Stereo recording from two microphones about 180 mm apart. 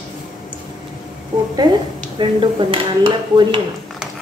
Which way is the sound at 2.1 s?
30° right (ahead or behind).